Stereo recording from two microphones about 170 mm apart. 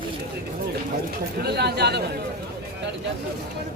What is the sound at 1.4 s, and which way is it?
Speech, 75° right (ahead or behind).